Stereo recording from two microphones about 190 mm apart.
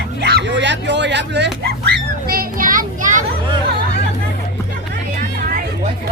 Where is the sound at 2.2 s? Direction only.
50° right (ahead or behind).